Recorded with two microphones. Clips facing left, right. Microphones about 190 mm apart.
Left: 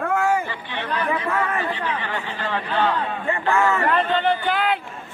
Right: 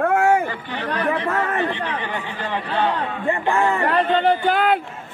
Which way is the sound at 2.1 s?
15° right (ahead or behind).